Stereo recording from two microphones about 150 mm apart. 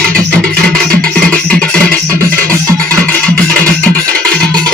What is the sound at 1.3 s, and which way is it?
Music, 5° left (ahead or behind).